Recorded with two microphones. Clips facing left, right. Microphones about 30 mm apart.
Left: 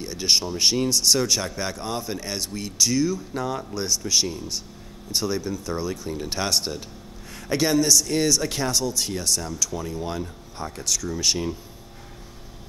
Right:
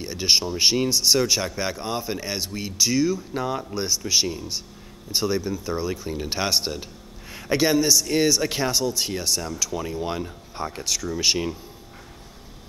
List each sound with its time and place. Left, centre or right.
0.0 s speech: centre